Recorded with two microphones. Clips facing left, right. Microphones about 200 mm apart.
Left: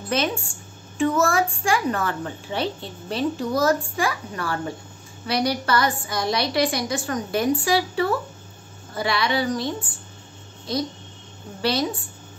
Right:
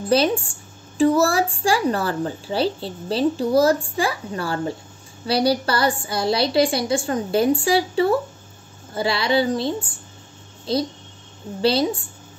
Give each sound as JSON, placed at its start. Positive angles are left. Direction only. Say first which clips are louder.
{"t": 0.1, "sound": "a woman's voice", "louder": "right 6 dB", "side_deg": -35}